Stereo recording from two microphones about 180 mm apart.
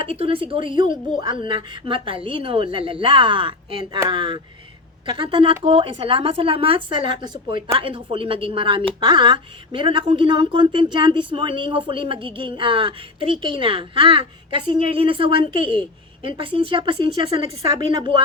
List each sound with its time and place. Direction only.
0.0 s a woman's voice: 30° right (ahead or behind)